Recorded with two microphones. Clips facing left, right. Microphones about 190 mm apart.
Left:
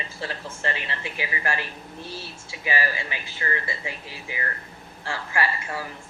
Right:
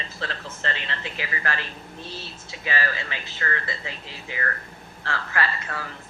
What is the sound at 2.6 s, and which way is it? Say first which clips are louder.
Speech: left 1 dB; 15° left (ahead or behind).